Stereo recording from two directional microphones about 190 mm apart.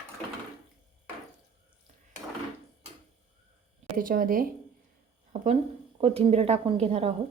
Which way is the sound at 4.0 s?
45° right (ahead or behind).